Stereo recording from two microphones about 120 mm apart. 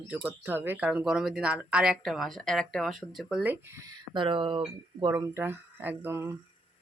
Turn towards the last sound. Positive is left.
turn(degrees=-20)  # may be behind; listen again after turning